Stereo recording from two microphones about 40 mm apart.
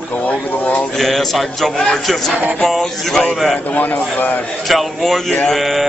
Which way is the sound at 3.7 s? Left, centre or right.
Left.